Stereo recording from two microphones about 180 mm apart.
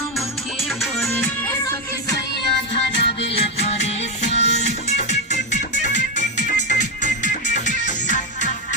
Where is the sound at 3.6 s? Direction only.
35° left (ahead or behind).